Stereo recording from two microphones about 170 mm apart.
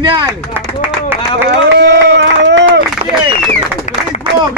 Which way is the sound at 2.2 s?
90° right.